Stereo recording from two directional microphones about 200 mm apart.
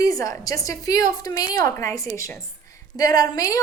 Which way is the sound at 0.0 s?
15° left (ahead or behind).